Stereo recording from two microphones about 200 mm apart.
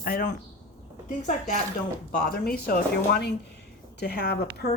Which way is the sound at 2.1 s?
45° left (ahead or behind).